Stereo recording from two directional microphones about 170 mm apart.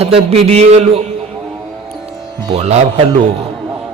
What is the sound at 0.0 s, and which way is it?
Speech, 35° right (ahead or behind).